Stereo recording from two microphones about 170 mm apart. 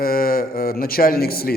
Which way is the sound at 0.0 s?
60° left (ahead or behind).